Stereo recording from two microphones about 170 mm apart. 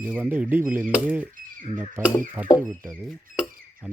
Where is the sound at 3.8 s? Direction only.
5° right (ahead or behind).